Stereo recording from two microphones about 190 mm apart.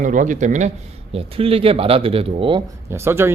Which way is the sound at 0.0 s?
45° right (ahead or behind).